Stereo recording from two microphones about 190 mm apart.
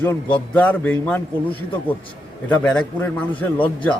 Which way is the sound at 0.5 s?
10° left (ahead or behind).